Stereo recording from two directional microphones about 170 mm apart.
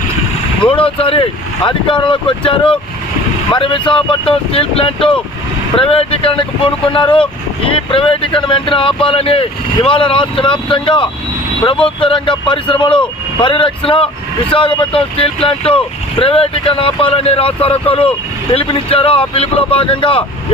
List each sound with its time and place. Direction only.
0.6 s speech: 30° left (ahead or behind)